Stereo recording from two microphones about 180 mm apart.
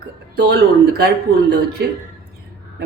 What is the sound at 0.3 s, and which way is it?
Speech, 70° right (ahead or behind).